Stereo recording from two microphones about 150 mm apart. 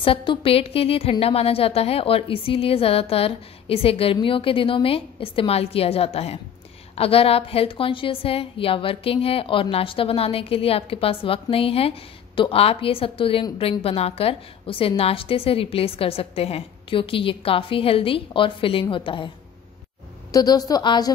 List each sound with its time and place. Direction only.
0.0 s a woman's voice: 35° left (ahead or behind)